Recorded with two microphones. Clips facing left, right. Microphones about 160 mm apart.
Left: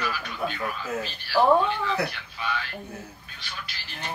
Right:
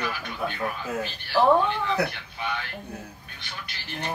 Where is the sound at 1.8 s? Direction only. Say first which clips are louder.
Right 1 dB; 20° right (ahead or behind).